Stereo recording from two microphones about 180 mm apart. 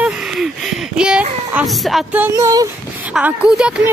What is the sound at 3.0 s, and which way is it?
Speech, 5° right (ahead or behind).